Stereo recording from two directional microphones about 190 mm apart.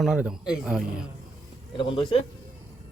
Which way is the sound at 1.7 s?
25° left (ahead or behind).